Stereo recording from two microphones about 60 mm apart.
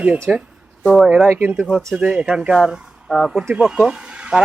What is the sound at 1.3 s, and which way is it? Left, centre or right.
Speech, right.